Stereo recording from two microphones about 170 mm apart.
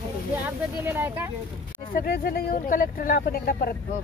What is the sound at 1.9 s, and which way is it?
Speech, 55° left (ahead or behind).